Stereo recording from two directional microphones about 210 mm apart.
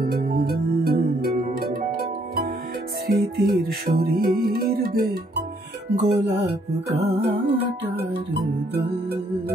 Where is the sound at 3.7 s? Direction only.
45° right (ahead or behind).